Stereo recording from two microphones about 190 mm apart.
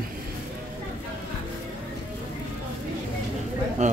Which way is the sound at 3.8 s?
40° right (ahead or behind).